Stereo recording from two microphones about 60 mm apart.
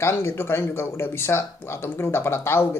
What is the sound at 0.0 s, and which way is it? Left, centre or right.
Speech, left.